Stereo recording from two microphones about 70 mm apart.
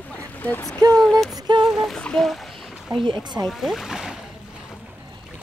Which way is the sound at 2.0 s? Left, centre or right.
Centre.